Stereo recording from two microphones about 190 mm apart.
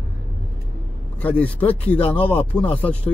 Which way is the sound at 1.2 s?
10° left (ahead or behind).